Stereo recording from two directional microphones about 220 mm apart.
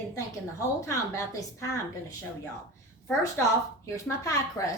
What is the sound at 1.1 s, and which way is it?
A woman's voice, 15° left (ahead or behind).